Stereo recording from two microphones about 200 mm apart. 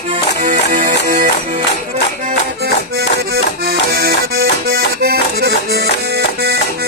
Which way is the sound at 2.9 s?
50° right (ahead or behind).